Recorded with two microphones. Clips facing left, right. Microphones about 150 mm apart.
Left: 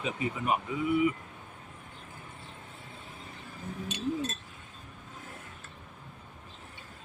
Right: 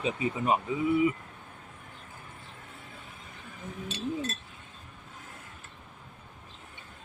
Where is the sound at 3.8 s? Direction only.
15° left (ahead or behind).